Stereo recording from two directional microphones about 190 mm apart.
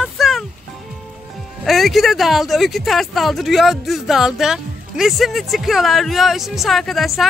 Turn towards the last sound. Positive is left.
turn(degrees=0)  # may be behind; listen again after turning